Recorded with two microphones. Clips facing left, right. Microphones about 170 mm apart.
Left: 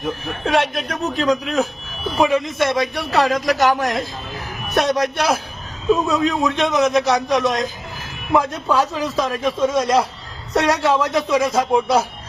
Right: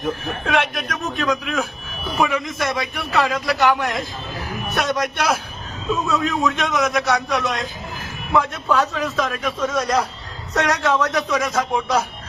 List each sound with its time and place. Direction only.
0.4 s a man's voice: 35° left (ahead or behind)